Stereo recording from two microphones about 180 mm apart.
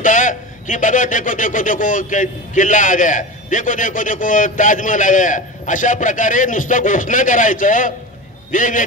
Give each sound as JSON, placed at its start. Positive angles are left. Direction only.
{"t": 0.0, "sound": "a man's voice", "side_deg": 45}